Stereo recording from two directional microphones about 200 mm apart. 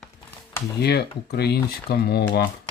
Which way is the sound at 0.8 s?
55° left (ahead or behind).